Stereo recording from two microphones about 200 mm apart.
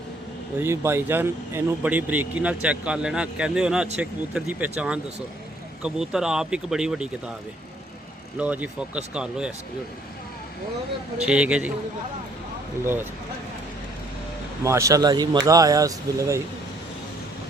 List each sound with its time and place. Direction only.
0.6 s speech: 15° right (ahead or behind)
8.4 s speech: 5° right (ahead or behind)
11.3 s speech: 5° right (ahead or behind)
12.8 s speech: 10° right (ahead or behind)
14.6 s speech: 15° right (ahead or behind)